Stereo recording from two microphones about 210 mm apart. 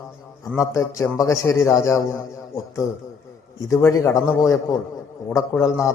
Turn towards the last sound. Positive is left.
turn(degrees=15)  # may be behind; listen again after turning